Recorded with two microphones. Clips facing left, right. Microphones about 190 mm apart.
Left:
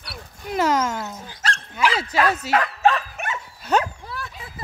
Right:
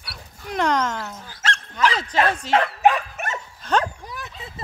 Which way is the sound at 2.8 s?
15° right (ahead or behind).